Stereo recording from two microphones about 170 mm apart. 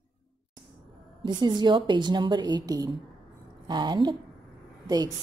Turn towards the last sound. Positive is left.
turn(degrees=-25)  # may be behind; listen again after turning